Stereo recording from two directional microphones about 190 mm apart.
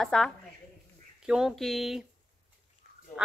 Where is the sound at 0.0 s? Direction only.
Centre (ahead or behind).